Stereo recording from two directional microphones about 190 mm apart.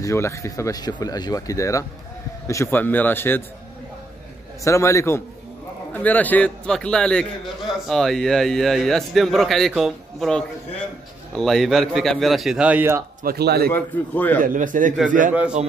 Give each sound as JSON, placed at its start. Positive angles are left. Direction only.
{"t": 0.0, "sound": "speech", "side_deg": 15}
{"t": 4.6, "sound": "a man's voice", "side_deg": 15}
{"t": 13.2, "sound": "speech", "side_deg": -55}
{"t": 13.7, "sound": "speech", "side_deg": 10}
{"t": 14.4, "sound": "a man's voice", "side_deg": -45}